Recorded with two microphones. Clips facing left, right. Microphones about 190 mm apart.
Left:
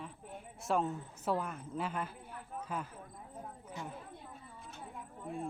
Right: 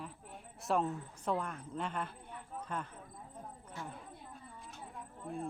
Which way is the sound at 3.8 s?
15° left (ahead or behind).